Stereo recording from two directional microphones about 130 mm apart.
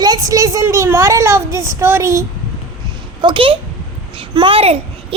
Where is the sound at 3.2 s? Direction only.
40° right (ahead or behind).